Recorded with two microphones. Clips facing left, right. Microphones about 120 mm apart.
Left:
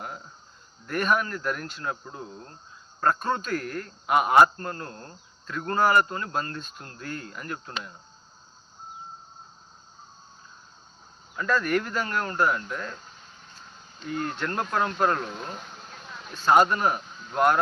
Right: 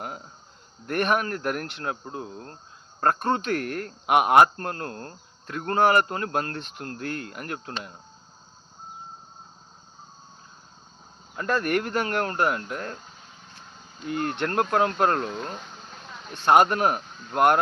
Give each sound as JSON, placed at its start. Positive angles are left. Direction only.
{"t": 0.9, "sound": "a man's voice", "side_deg": -60}
{"t": 11.3, "sound": "a man's voice", "side_deg": -55}
{"t": 14.1, "sound": "a man's voice", "side_deg": -60}
{"t": 15.3, "sound": "a sound", "side_deg": 0}
{"t": 16.3, "sound": "a man's voice", "side_deg": -60}